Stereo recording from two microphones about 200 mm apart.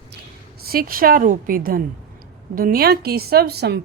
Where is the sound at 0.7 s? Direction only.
45° right (ahead or behind).